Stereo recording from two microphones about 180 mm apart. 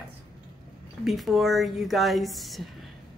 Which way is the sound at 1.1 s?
Centre (ahead or behind).